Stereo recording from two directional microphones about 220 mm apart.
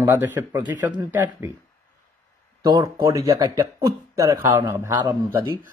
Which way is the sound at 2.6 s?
15° right (ahead or behind).